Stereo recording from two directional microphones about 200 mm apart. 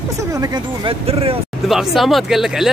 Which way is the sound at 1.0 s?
30° right (ahead or behind).